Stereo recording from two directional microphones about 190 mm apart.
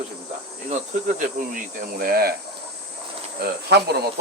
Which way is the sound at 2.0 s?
50° right (ahead or behind).